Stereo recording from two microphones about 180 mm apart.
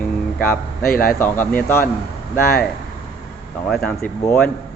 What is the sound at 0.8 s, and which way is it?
Speech, 50° left (ahead or behind).